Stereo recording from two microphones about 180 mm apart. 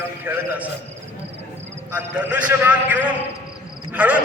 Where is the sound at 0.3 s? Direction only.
10° right (ahead or behind).